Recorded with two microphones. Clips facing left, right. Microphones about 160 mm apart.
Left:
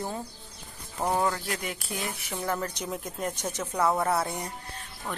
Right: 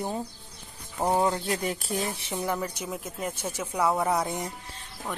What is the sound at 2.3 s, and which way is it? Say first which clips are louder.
Speech: right 1 dB; 15° right (ahead or behind).